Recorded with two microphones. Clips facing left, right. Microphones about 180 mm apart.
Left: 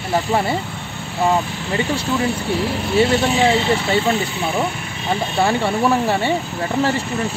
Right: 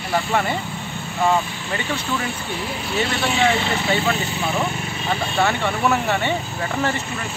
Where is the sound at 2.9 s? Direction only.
35° left (ahead or behind).